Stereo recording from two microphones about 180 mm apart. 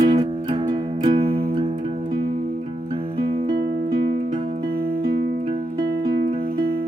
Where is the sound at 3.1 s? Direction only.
30° right (ahead or behind).